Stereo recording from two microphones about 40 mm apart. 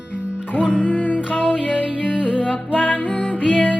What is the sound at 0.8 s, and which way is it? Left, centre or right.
Music, left.